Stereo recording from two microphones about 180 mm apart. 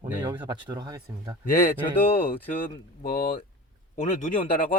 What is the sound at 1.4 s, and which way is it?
Speech, 50° left (ahead or behind).